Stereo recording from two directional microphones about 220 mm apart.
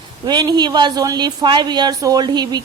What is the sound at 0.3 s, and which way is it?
A woman's voice, 20° right (ahead or behind).